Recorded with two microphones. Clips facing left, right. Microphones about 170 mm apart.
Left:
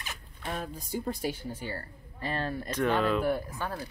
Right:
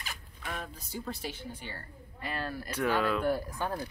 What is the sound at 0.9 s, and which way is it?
A woman's voice, 50° left (ahead or behind).